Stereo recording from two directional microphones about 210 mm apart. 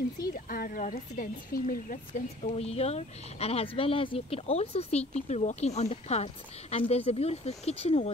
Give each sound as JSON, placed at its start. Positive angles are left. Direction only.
{"t": 0.3, "sound": "speech", "side_deg": 45}